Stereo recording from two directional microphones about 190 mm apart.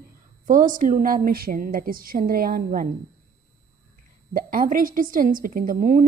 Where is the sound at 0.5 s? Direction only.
45° right (ahead or behind).